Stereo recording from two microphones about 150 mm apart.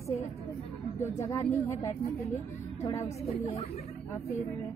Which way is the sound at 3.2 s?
40° left (ahead or behind).